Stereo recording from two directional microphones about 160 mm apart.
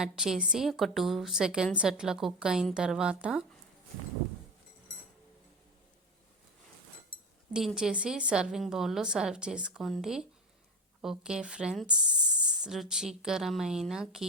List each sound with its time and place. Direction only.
0.0 s a woman's voice: 5° right (ahead or behind)
7.5 s a woman's voice: centre (ahead or behind)